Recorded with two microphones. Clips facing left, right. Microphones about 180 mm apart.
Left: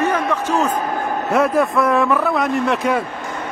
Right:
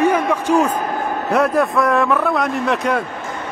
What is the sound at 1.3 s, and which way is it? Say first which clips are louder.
Speech: even; centre (ahead or behind).